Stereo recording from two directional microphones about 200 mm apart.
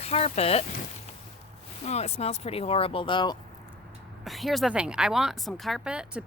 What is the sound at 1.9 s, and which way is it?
Speech, 35° left (ahead or behind).